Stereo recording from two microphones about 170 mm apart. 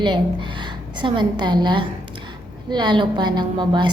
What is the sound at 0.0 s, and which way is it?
A woman's voice, 30° right (ahead or behind).